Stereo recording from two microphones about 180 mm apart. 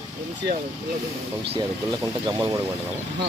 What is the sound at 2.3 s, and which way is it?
Speech, 25° right (ahead or behind).